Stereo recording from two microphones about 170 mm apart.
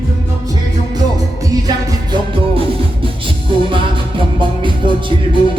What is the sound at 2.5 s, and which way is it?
Music, 30° right (ahead or behind).